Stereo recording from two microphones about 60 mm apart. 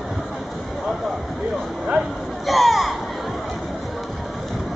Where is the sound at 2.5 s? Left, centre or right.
Centre.